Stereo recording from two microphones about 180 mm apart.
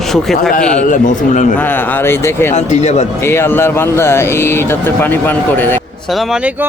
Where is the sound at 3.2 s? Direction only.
15° left (ahead or behind).